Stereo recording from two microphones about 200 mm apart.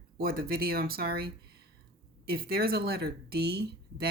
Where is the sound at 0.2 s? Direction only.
45° right (ahead or behind).